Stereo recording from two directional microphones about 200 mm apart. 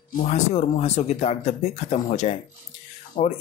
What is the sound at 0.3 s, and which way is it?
Speech, 35° left (ahead or behind).